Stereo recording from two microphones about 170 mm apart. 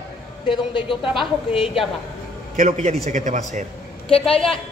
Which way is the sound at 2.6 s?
45° right (ahead or behind).